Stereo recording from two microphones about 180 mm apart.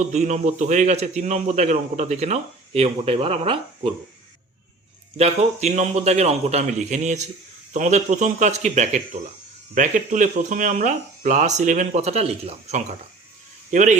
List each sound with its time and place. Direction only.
0.0 s a man's voice: 40° right (ahead or behind)
5.1 s a man's voice: 35° right (ahead or behind)